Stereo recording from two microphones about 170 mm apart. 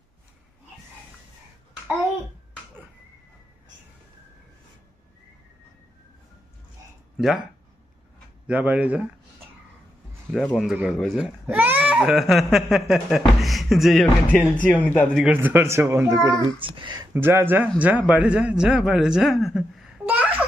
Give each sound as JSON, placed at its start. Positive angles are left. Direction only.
{"t": 7.2, "sound": "speech", "side_deg": 0}
{"t": 8.5, "sound": "a man's voice", "side_deg": -10}
{"t": 10.3, "sound": "speech", "side_deg": 0}
{"t": 11.4, "sound": "speech", "side_deg": -10}
{"t": 15.2, "sound": "a man's voice", "side_deg": -10}
{"t": 17.1, "sound": "a man's voice", "side_deg": -15}